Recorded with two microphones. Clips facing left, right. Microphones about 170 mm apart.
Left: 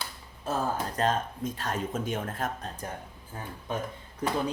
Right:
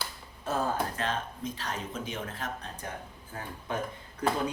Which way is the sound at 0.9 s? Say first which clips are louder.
Left 5 dB; 45° left (ahead or behind).